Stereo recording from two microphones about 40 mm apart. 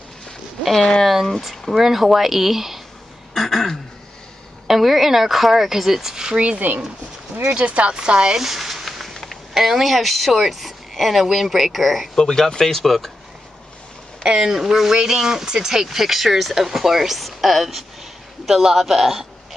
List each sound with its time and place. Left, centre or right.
1.2 s a woman's voice: centre
3.3 s speech: centre
4.6 s speech: centre
6.7 s speech: right
7.4 s speech: right
8.4 s a sound: centre
9.5 s a woman's voice: centre
12.2 s speech: centre
14.4 s speech: centre